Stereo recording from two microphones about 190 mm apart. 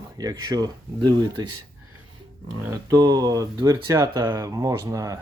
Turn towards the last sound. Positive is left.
turn(degrees=-20)  # may be behind; listen again after turning